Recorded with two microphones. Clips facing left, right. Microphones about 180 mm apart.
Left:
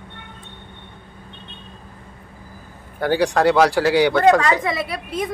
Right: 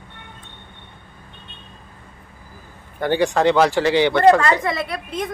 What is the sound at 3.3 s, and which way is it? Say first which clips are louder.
A woman's voice: left 1 dB; 5° left (ahead or behind).